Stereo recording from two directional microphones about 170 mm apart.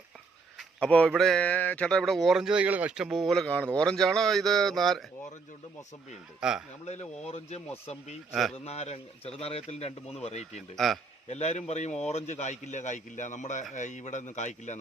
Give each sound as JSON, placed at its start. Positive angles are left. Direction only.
{"t": 0.8, "sound": "speech", "side_deg": 5}
{"t": 6.4, "sound": "speech", "side_deg": -5}
{"t": 6.8, "sound": "speech", "side_deg": 40}
{"t": 8.3, "sound": "speech", "side_deg": 0}
{"t": 8.5, "sound": "speech", "side_deg": 40}
{"t": 10.8, "sound": "speech", "side_deg": 0}
{"t": 11.3, "sound": "speech", "side_deg": 40}